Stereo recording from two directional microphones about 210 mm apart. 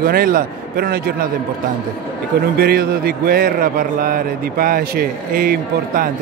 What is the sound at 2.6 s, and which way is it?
A man's voice, 45° right (ahead or behind).